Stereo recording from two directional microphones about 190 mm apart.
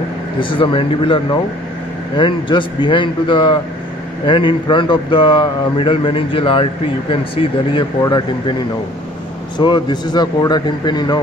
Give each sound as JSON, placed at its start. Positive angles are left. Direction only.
{"t": 0.4, "sound": "a man's voice", "side_deg": 25}
{"t": 9.6, "sound": "a man's voice", "side_deg": 25}